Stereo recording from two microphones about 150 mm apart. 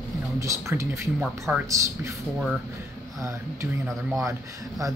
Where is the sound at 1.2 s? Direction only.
5° right (ahead or behind).